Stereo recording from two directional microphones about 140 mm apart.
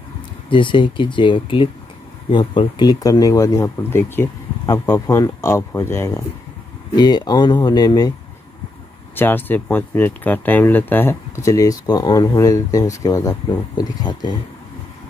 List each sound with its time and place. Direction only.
0.5 s speech: 35° left (ahead or behind); by 6.2 s 20° left (ahead or behind)
7.0 s speech: 30° left (ahead or behind)
9.1 s speech: 15° left (ahead or behind); by 14.3 s 30° left (ahead or behind)